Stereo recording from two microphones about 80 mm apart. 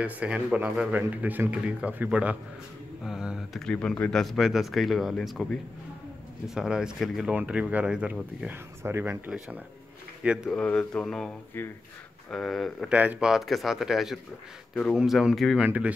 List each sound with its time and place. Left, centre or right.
0.0 s speech: centre
3.5 s speech: centre; by 9.3 s right
10.2 s speech: centre
10.5 s a sound: centre
12.3 s speech: centre
12.9 s speech: centre
13.2 s speech: centre
15.5 s speech: centre